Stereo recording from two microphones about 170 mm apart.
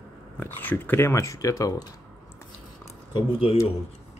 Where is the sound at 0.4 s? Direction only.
10° left (ahead or behind).